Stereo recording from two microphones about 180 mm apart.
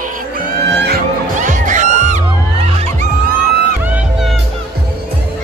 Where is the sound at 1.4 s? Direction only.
45° right (ahead or behind).